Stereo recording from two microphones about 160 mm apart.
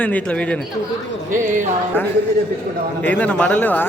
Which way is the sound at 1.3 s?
55° right (ahead or behind).